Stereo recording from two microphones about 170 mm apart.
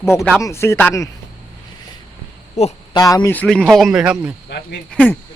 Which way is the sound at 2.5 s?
40° left (ahead or behind).